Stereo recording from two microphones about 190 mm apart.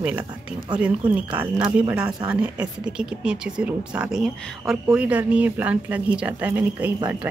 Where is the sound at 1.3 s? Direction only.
5° right (ahead or behind).